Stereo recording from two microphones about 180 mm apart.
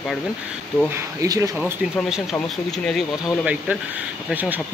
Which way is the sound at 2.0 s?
5° right (ahead or behind).